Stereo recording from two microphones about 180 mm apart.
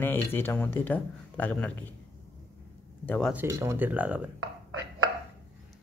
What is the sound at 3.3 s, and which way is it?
Speech, 15° right (ahead or behind).